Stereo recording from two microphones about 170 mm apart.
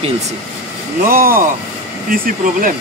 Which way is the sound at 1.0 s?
55° right (ahead or behind).